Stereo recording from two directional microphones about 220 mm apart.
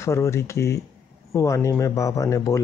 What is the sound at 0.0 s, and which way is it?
Speech, 15° left (ahead or behind).